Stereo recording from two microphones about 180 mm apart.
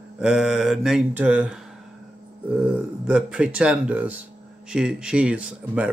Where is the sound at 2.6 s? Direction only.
5° right (ahead or behind).